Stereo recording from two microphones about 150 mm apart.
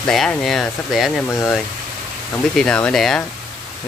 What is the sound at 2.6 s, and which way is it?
Speech, 5° left (ahead or behind).